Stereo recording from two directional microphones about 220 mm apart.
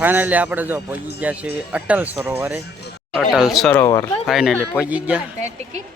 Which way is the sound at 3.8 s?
15° left (ahead or behind).